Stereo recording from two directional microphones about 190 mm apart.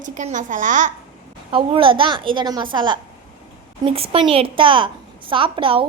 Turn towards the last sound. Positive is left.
turn(degrees=-25)  # may be behind; listen again after turning